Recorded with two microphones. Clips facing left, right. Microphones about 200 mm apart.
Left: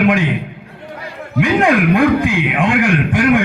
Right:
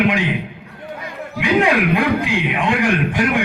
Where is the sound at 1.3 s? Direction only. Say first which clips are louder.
Left 3 dB; 50° left (ahead or behind).